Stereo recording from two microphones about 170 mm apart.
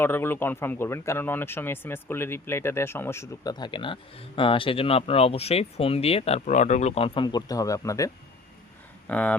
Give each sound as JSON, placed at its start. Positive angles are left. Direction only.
{"t": 0.0, "sound": "speech", "side_deg": 15}
{"t": 9.0, "sound": "speech", "side_deg": 10}